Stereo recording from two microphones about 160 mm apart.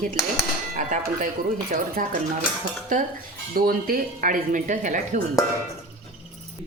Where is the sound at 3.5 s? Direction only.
65° right (ahead or behind).